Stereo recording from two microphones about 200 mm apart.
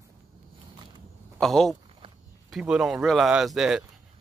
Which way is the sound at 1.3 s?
Centre (ahead or behind).